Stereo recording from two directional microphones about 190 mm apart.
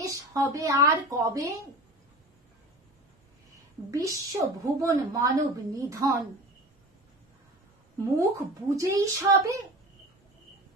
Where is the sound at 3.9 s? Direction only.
15° right (ahead or behind).